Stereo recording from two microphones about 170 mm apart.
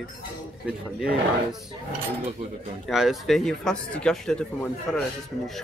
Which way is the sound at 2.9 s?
Centre (ahead or behind).